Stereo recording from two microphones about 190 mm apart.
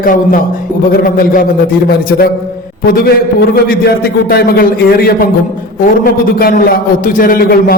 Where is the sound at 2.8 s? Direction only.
50° left (ahead or behind).